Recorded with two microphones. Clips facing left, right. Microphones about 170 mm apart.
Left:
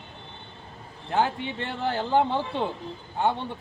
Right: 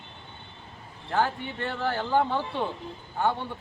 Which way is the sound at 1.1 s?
20° left (ahead or behind).